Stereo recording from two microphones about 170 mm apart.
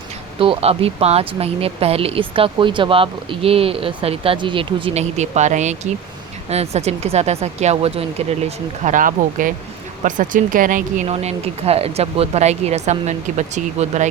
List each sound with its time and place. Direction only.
0.3 s speech: 30° right (ahead or behind); by 11.0 s 50° right (ahead or behind)
11.0 s speech: 35° right (ahead or behind)